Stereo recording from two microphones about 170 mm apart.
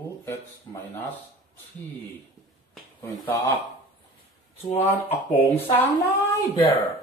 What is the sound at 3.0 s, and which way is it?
Speech, 15° left (ahead or behind).